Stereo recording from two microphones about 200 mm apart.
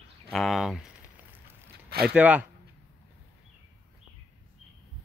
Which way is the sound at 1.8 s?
50° right (ahead or behind).